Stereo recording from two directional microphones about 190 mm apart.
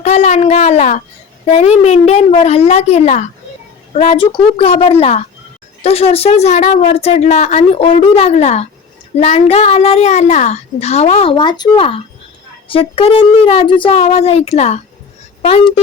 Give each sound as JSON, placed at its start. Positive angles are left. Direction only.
{"t": 0.0, "sound": "a child's voice", "side_deg": 35}